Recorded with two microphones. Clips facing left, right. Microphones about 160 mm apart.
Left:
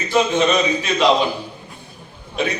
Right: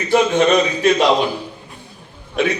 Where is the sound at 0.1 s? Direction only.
55° right (ahead or behind).